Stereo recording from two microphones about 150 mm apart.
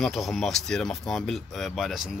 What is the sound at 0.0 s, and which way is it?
A man's voice, 5° left (ahead or behind).